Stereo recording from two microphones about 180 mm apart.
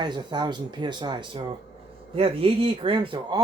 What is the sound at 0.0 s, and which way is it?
Speech, 25° right (ahead or behind).